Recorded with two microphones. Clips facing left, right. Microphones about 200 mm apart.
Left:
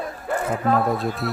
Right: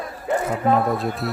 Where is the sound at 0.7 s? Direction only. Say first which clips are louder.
Even; centre (ahead or behind).